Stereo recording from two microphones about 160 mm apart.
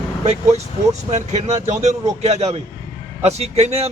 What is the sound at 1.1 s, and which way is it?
Speech, 45° right (ahead or behind).